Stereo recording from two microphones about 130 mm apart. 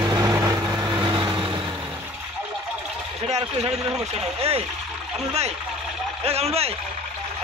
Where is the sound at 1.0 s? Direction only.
40° right (ahead or behind).